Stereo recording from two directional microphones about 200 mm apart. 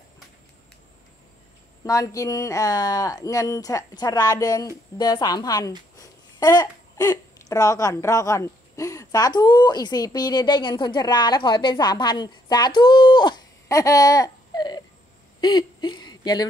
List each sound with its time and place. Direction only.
1.9 s speech: 15° left (ahead or behind)